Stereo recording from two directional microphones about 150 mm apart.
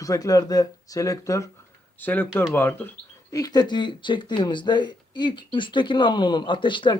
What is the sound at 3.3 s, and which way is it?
Speech, 25° left (ahead or behind).